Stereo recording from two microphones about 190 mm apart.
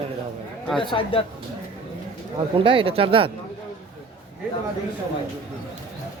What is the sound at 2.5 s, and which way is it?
Speech, 25° right (ahead or behind).